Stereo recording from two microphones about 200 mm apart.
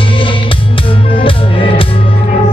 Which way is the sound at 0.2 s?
25° left (ahead or behind).